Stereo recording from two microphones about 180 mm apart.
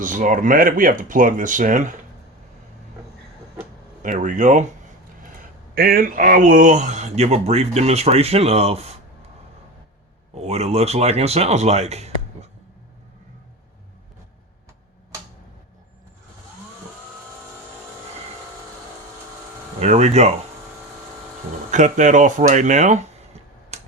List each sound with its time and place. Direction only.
0.0 s speech: 45° right (ahead or behind)
4.0 s speech: 45° right (ahead or behind)
5.7 s speech: 55° right (ahead or behind); by 9.0 s 35° right (ahead or behind)
10.3 s speech: 35° right (ahead or behind)
19.8 s speech: 40° right (ahead or behind)
21.7 s speech: 45° right (ahead or behind)